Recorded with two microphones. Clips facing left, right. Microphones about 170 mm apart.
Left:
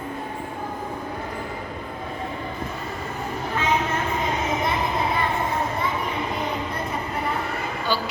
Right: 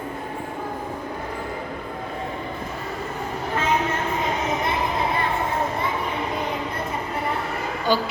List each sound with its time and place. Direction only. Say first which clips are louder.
7.9 s a woman's voice: right 5 dB; 15° right (ahead or behind)